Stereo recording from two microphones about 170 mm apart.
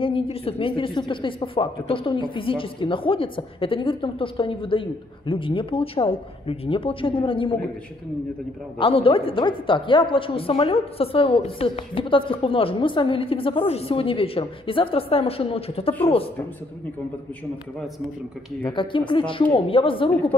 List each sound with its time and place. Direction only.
0.0 s speech: 35° left (ahead or behind)
8.7 s speech: 30° left (ahead or behind)
18.6 s a woman's voice: 30° left (ahead or behind)